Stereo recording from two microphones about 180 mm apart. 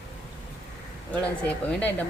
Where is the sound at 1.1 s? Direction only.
5° left (ahead or behind).